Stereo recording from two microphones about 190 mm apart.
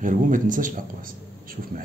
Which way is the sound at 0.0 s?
45° right (ahead or behind).